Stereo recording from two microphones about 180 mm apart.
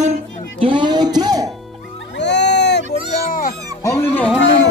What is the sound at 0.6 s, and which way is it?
Speech, 25° right (ahead or behind).